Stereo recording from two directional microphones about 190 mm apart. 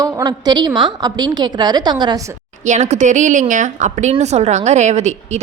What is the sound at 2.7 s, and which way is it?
A woman's voice, 40° right (ahead or behind).